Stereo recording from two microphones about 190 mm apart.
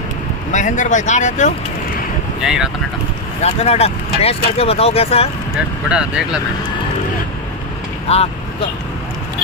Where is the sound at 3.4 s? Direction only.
35° left (ahead or behind).